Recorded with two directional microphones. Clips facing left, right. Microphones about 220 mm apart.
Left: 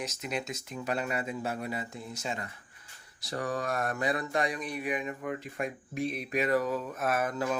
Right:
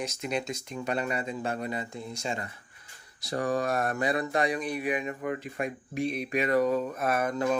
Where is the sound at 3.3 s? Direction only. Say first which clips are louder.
Right 4 dB; 40° right (ahead or behind).